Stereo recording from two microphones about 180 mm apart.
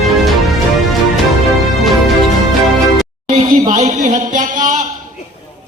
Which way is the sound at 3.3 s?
45° right (ahead or behind).